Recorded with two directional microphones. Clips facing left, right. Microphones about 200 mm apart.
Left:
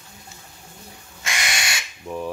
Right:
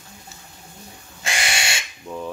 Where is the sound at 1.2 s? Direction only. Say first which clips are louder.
Right 2 dB; 30° right (ahead or behind).